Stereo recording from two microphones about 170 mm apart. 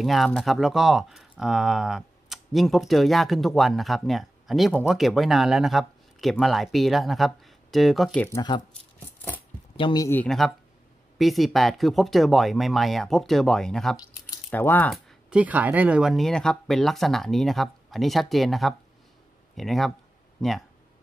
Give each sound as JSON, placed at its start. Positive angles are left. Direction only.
{"t": 0.0, "sound": "speech", "side_deg": 0}
{"t": 8.3, "sound": "speech", "side_deg": 25}
{"t": 9.8, "sound": "speech", "side_deg": 30}
{"t": 10.0, "sound": "speech", "side_deg": 5}